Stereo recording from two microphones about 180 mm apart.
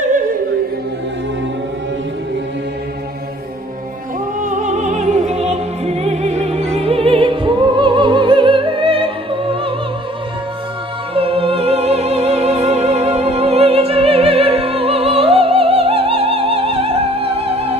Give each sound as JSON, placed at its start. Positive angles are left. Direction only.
{"t": 4.5, "sound": "music", "side_deg": -40}
{"t": 11.1, "sound": "music", "side_deg": -30}